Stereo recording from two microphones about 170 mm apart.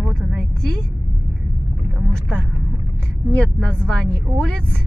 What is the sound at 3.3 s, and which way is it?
Speech, 5° left (ahead or behind).